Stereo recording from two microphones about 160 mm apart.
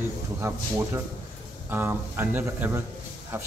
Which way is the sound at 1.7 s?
15° right (ahead or behind).